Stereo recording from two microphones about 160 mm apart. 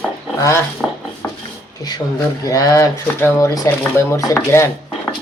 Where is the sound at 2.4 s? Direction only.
20° left (ahead or behind).